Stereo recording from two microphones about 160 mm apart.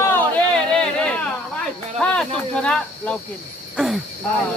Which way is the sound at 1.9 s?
5° left (ahead or behind).